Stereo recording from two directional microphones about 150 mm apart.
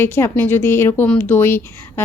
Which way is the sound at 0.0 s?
15° left (ahead or behind).